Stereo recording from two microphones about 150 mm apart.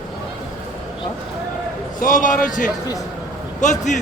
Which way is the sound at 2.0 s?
60° left (ahead or behind).